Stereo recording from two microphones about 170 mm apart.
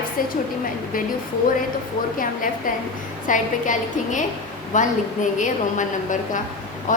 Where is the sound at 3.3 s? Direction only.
50° left (ahead or behind).